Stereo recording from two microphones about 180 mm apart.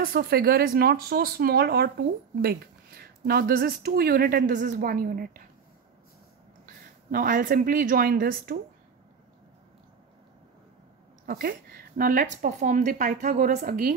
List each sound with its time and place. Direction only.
0.0 s speech: 55° right (ahead or behind)
7.1 s speech: 50° right (ahead or behind)
11.2 s speech: 55° right (ahead or behind)